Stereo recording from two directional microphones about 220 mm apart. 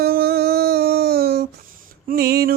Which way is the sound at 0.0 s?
45° right (ahead or behind).